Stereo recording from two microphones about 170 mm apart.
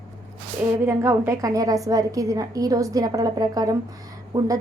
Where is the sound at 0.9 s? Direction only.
15° right (ahead or behind).